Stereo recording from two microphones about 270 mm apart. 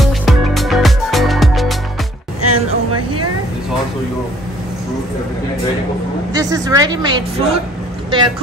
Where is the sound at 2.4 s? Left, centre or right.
Right.